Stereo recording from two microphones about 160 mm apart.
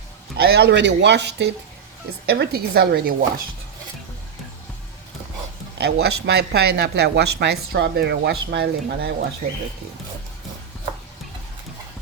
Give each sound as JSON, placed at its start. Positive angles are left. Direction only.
{"t": 0.3, "sound": "a woman's voice", "side_deg": -85}
{"t": 5.7, "sound": "speech", "side_deg": -90}
{"t": 9.4, "sound": "speech", "side_deg": -45}